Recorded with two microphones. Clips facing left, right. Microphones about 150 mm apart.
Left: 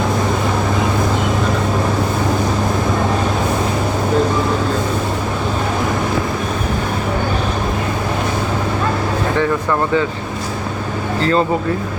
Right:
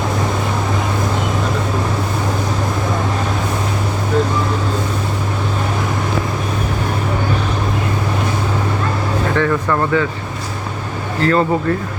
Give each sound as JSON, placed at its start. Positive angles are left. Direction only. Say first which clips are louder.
{"t": 11.2, "sound": "speech", "louder": "right 1 dB", "side_deg": 20}